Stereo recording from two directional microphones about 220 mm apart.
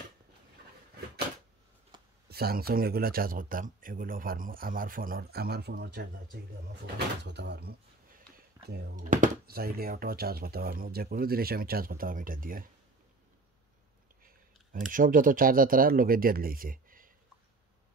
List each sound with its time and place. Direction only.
1.9 s a sound: 20° right (ahead or behind)
2.2 s speech: 45° right (ahead or behind)
14.7 s speech: 40° right (ahead or behind)